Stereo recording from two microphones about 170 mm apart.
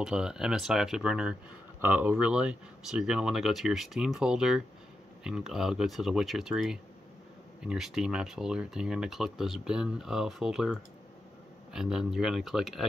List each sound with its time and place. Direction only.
0.0 s speech: 5° right (ahead or behind)